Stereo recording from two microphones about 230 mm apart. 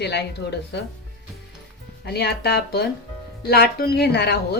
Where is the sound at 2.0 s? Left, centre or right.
Left.